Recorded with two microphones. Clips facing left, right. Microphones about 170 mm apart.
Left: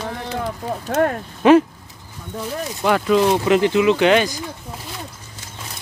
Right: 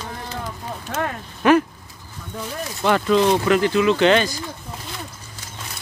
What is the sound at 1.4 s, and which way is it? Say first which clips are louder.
Speech: left 4 dB; 25° left (ahead or behind).